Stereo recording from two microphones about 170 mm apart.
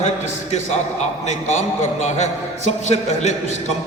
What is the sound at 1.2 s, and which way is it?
A man's voice, 45° left (ahead or behind).